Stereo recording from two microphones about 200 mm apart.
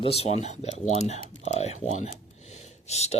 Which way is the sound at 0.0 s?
30° left (ahead or behind).